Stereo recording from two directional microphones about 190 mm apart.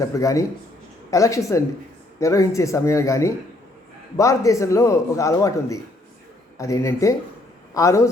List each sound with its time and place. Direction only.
0.0 s a man's voice: 15° left (ahead or behind)